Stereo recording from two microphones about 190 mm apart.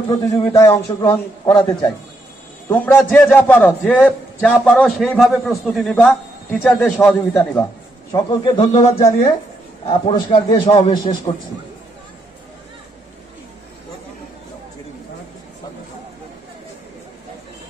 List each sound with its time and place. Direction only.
0.1 s a man's voice: 20° left (ahead or behind)
2.7 s a man's voice: 10° left (ahead or behind)
8.1 s a man's voice: 20° left (ahead or behind)